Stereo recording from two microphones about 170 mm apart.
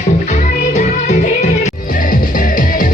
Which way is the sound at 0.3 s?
45° left (ahead or behind).